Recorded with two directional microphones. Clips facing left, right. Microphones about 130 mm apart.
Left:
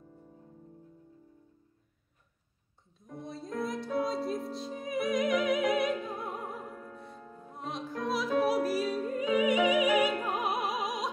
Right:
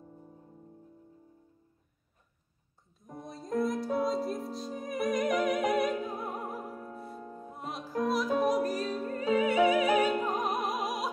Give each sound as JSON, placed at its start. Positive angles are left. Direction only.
{"t": 3.3, "sound": "music", "side_deg": 0}
{"t": 6.6, "sound": "music", "side_deg": -30}
{"t": 7.2, "sound": "music", "side_deg": -40}
{"t": 7.5, "sound": "music", "side_deg": -5}
{"t": 10.4, "sound": "music", "side_deg": 0}